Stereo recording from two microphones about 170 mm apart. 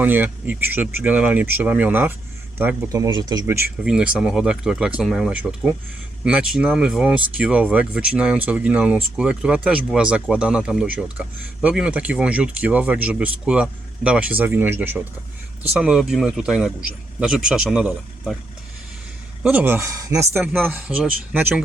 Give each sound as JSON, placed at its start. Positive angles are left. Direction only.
{"t": 0.0, "sound": "speech", "side_deg": -10}
{"t": 2.9, "sound": "speech", "side_deg": -20}
{"t": 3.8, "sound": "speech", "side_deg": -5}
{"t": 19.4, "sound": "speech", "side_deg": -10}